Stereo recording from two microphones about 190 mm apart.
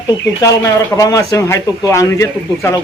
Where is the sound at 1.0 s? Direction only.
20° left (ahead or behind).